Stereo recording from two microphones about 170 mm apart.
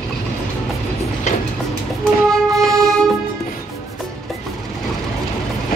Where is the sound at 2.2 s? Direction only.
Centre (ahead or behind).